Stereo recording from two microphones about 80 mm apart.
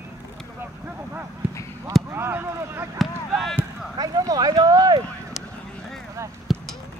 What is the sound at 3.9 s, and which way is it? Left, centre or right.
Speech, right.